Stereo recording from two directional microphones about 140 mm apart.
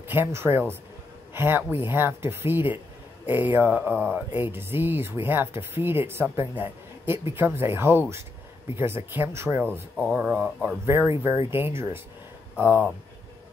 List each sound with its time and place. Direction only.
0.1 s speech: 15° right (ahead or behind)